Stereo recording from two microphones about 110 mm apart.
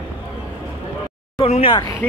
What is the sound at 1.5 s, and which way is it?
Speech, 60° left (ahead or behind).